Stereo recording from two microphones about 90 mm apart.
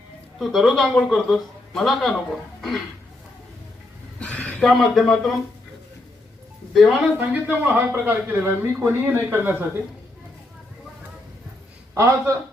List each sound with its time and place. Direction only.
0.3 s speech: centre (ahead or behind)
4.2 s a sound: 15° left (ahead or behind)
4.6 s speech: centre (ahead or behind)
6.7 s speech: centre (ahead or behind)
7.4 s a man's voice: 15° right (ahead or behind)
11.9 s a man's voice: 30° right (ahead or behind)